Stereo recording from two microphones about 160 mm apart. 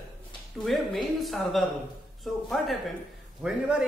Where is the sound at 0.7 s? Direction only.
Centre (ahead or behind).